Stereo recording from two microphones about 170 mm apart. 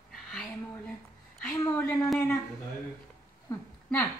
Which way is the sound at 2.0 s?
5° left (ahead or behind).